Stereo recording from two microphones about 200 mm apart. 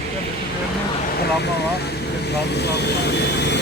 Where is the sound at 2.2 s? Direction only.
55° left (ahead or behind).